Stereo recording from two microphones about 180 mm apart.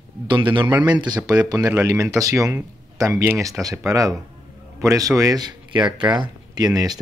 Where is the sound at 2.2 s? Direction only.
15° right (ahead or behind).